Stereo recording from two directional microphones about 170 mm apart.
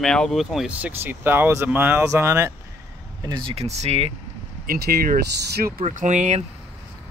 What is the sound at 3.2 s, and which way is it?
Speech, 25° right (ahead or behind).